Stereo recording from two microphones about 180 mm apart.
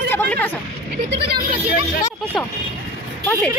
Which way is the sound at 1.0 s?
65° right (ahead or behind).